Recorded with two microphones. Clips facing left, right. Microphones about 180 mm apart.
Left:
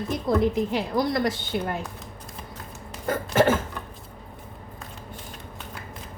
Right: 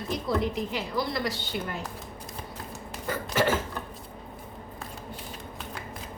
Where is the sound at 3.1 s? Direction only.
50° left (ahead or behind).